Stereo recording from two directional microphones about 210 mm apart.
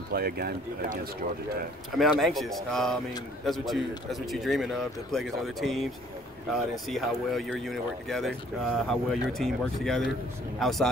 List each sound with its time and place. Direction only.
0.1 s speech: 50° right (ahead or behind)
2.0 s speech: centre (ahead or behind)